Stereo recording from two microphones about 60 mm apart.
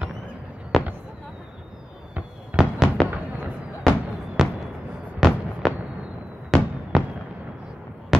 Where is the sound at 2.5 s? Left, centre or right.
Right.